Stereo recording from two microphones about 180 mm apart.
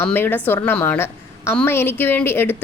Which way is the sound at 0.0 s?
10° left (ahead or behind).